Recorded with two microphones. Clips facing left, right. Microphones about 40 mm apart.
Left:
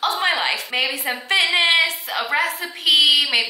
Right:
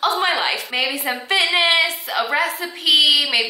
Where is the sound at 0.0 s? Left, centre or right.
Centre.